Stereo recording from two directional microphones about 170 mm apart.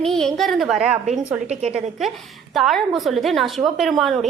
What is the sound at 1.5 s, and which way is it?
Speech, 40° right (ahead or behind).